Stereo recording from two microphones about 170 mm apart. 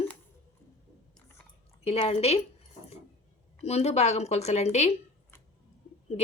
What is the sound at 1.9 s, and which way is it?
Speech, 35° left (ahead or behind).